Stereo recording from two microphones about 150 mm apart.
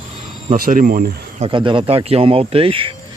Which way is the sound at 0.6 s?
70° right (ahead or behind).